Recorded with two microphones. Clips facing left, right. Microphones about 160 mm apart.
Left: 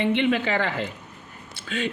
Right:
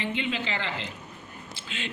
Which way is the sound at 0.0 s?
65° left (ahead or behind).